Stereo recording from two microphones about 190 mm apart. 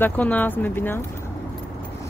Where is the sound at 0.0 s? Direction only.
10° left (ahead or behind).